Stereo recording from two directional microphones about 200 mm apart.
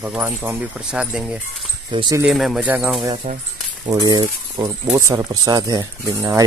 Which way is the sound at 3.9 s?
20° right (ahead or behind).